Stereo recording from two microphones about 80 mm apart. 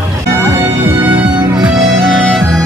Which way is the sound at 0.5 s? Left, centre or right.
Right.